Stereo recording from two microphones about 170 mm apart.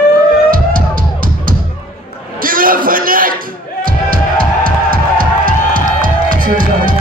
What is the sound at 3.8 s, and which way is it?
Music, 55° right (ahead or behind).